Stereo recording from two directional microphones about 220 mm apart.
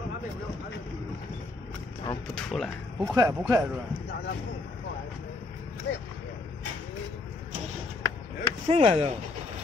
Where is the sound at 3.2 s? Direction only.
15° right (ahead or behind).